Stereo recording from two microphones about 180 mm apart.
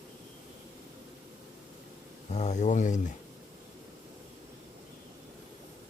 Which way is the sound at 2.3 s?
40° left (ahead or behind).